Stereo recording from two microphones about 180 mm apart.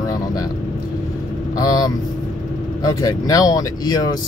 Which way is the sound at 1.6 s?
20° left (ahead or behind).